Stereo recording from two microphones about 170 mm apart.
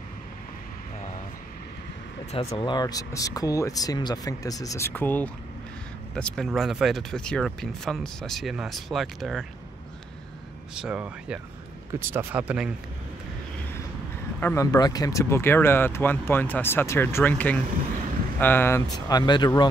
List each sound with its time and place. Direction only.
2.3 s speech: 30° left (ahead or behind); by 9.5 s centre (ahead or behind)
10.7 s speech: 5° right (ahead or behind)
14.4 s speech: 15° left (ahead or behind)